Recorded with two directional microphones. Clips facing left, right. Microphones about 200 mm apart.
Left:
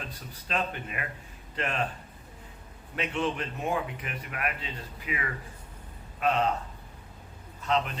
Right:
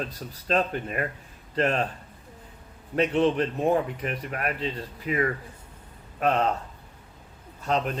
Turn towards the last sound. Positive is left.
turn(degrees=-45)  # may be behind; listen again after turning